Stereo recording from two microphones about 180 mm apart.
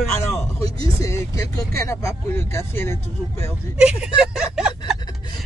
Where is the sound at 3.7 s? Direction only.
5° right (ahead or behind).